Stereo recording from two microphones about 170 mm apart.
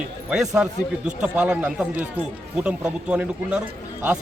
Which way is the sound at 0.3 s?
5° right (ahead or behind).